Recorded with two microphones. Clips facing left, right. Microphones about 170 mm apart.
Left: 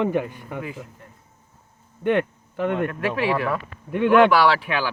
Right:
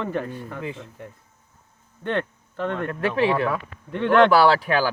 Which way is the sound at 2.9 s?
30° right (ahead or behind).